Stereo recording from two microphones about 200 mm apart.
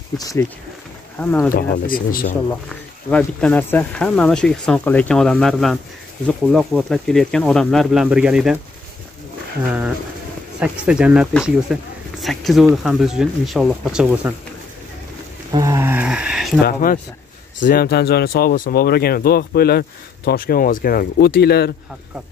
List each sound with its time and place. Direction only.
0.2 s speech: 15° left (ahead or behind)
1.5 s speech: 45° left (ahead or behind)
2.7 s speech: 5° left (ahead or behind)
10.6 s speech: 5° right (ahead or behind)
15.5 s speech: 15° right (ahead or behind)
16.6 s speech: 45° left (ahead or behind)